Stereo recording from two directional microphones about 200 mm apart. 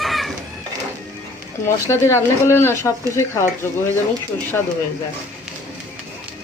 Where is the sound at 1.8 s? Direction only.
15° left (ahead or behind).